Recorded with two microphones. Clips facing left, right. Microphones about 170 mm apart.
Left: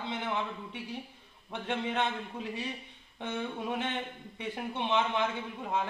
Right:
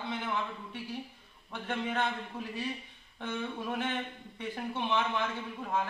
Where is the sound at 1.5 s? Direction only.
20° left (ahead or behind).